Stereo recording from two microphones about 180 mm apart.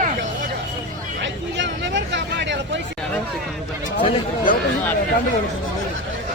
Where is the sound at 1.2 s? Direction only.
80° right.